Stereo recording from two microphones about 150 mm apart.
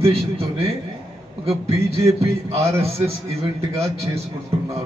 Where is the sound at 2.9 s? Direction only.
40° right (ahead or behind).